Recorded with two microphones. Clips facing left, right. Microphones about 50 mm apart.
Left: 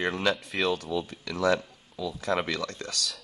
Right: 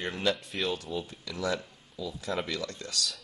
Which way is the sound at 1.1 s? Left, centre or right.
Left.